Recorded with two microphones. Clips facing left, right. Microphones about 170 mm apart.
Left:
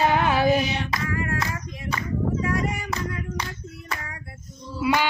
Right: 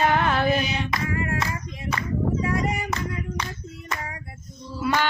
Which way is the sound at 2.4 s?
20° right (ahead or behind).